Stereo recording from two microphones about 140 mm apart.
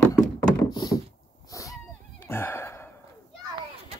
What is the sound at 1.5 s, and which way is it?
Cat, 25° left (ahead or behind).